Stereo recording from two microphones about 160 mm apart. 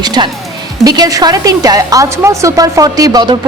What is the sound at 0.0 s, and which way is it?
A woman's voice, 25° right (ahead or behind).